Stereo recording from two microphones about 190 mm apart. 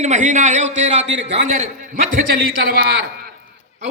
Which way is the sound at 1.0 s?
70° right (ahead or behind).